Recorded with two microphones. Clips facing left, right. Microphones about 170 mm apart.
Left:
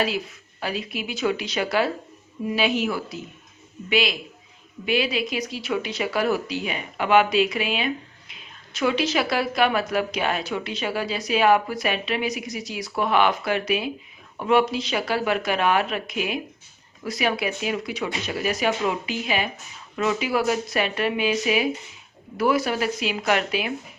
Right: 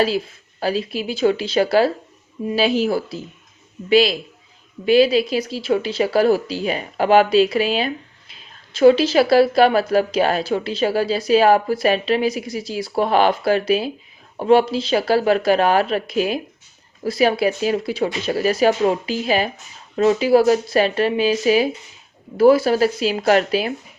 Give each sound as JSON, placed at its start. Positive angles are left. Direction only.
{"t": 0.0, "sound": "speech", "side_deg": -35}